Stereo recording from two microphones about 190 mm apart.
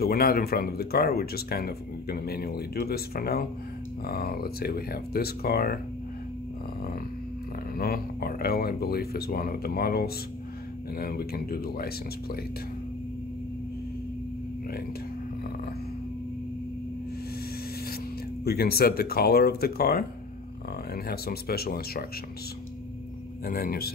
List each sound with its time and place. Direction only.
0.0 s speech: 55° left (ahead or behind)
7.7 s speech: 55° left (ahead or behind)
18.4 s speech: 55° left (ahead or behind)
23.4 s speech: 50° left (ahead or behind)